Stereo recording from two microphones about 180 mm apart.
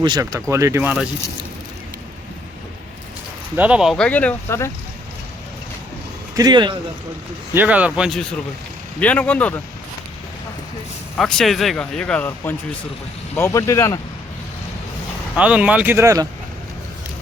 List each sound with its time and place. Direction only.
0.0 s speech: 20° right (ahead or behind)
3.5 s speech: 5° right (ahead or behind); by 4.7 s 15° left (ahead or behind)
6.3 s speech: 20° right (ahead or behind)
7.5 s speech: 10° right (ahead or behind); by 9.6 s 10° left (ahead or behind)
11.2 s speech: centre (ahead or behind)
15.4 s speech: 5° right (ahead or behind)